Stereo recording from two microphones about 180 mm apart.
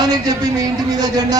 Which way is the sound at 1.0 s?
20° right (ahead or behind).